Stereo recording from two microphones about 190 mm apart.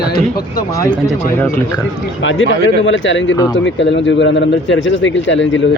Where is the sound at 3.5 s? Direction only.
75° left (ahead or behind).